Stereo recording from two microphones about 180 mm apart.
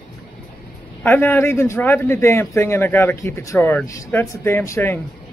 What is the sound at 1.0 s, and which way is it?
Speech, 10° left (ahead or behind).